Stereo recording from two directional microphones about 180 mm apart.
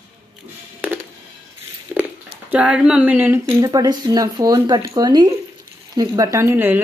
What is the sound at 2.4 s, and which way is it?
Speech, 10° right (ahead or behind).